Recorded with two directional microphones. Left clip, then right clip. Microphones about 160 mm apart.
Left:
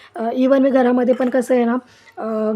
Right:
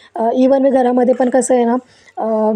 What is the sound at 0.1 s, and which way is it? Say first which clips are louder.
A woman's voice: right 4 dB; 15° right (ahead or behind).